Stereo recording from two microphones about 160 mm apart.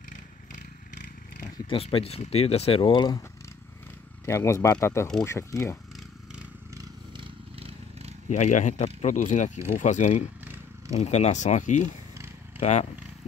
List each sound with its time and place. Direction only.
1.4 s speech: 35° left (ahead or behind)
4.3 s speech: 20° left (ahead or behind)
7.2 s vehicle: 40° right (ahead or behind)
8.3 s speech: 50° left (ahead or behind)